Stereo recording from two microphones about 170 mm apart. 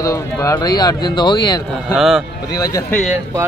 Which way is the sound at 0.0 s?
20° left (ahead or behind).